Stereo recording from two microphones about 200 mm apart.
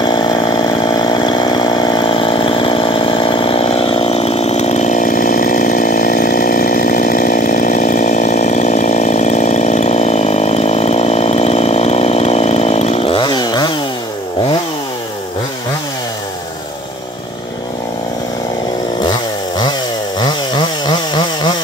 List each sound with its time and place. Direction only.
0.0 s chainsaw: 25° left (ahead or behind)
20.2 s chainsaw: 20° left (ahead or behind)